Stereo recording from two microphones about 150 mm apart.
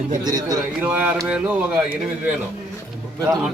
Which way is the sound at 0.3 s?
25° right (ahead or behind).